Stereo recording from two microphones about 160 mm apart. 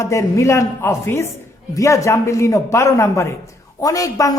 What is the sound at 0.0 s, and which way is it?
A man's voice, 20° left (ahead or behind).